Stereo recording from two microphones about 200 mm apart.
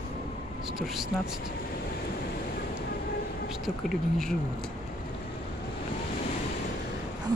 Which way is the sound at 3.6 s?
Centre (ahead or behind).